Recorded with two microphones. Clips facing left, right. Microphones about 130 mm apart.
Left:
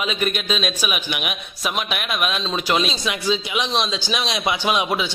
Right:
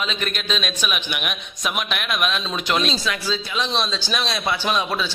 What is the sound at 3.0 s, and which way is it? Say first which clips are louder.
A man's voice: left 3 dB; 15° left (ahead or behind).